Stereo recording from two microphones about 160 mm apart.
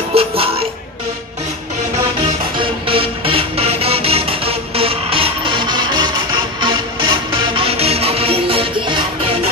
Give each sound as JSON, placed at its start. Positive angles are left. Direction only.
{"t": 0.1, "sound": "music", "side_deg": -35}
{"t": 2.5, "sound": "music", "side_deg": -35}